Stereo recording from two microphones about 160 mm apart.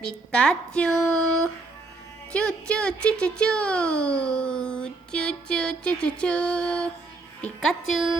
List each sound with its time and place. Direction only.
0.0 s speech: 5° left (ahead or behind)